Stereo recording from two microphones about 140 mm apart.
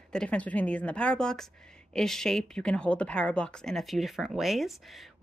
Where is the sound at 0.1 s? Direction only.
5° left (ahead or behind).